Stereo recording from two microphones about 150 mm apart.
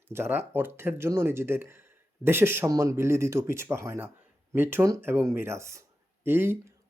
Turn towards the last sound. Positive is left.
turn(degrees=-15)  # may be behind; listen again after turning